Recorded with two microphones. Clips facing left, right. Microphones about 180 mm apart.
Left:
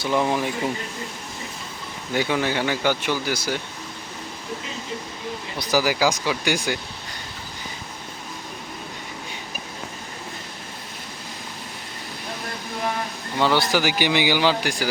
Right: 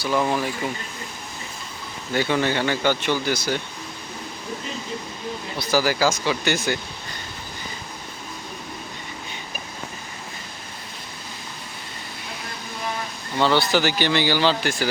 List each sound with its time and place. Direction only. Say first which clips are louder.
0.0 s speech: even; 15° left (ahead or behind)
2.1 s speech: right 1 dB; 10° left (ahead or behind)
5.5 s speech: even; 15° left (ahead or behind)
13.4 s speech: right 1 dB; 10° left (ahead or behind)